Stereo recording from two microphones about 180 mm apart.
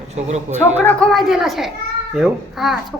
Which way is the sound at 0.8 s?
5° left (ahead or behind).